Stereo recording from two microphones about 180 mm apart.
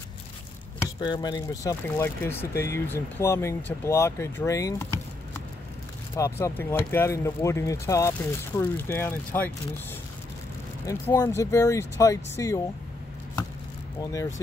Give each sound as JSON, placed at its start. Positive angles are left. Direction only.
{"t": 0.7, "sound": "speech", "side_deg": 25}
{"t": 6.1, "sound": "speech", "side_deg": 15}
{"t": 10.9, "sound": "speech", "side_deg": 15}